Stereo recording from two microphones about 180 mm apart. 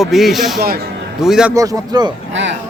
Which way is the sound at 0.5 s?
55° right (ahead or behind).